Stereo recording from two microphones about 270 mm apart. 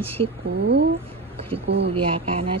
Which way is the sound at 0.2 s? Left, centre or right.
Right.